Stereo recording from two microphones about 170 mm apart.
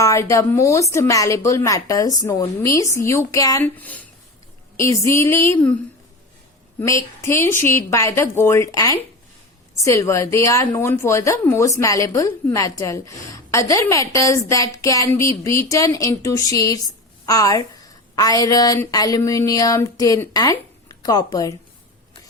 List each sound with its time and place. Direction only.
0.0 s a woman's voice: 15° left (ahead or behind)
6.7 s a woman's voice: 15° left (ahead or behind)